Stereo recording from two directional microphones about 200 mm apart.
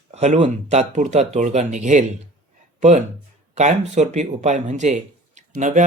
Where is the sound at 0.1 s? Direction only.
35° right (ahead or behind).